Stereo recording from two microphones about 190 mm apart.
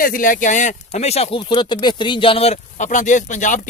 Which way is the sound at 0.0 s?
45° left (ahead or behind).